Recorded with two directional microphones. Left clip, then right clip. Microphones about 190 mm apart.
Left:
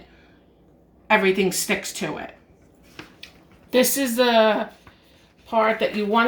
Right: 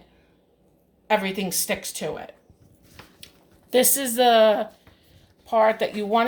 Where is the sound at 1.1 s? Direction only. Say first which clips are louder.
Left 5 dB; 60° right (ahead or behind).